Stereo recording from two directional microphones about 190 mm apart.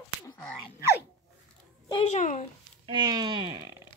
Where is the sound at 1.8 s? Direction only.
30° left (ahead or behind).